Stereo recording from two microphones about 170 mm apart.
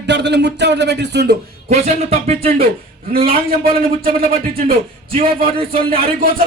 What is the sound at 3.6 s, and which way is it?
A man's voice, 60° right (ahead or behind).